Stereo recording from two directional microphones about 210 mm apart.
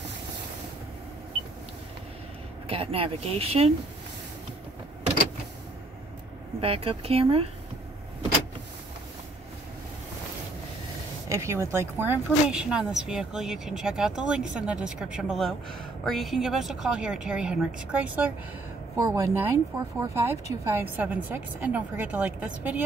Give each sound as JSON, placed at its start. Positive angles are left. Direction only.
{"t": 2.7, "sound": "speech", "side_deg": -25}
{"t": 6.6, "sound": "speech", "side_deg": -25}
{"t": 11.2, "sound": "a woman's voice", "side_deg": -15}